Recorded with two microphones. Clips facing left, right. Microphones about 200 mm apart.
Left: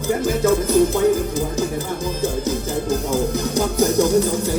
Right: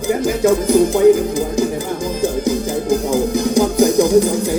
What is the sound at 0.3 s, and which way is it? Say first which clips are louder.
Speech: right 4 dB; 15° right (ahead or behind).